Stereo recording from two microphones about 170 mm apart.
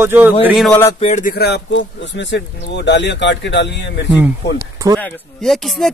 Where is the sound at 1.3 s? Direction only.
75° left (ahead or behind); by 4.1 s 90° left.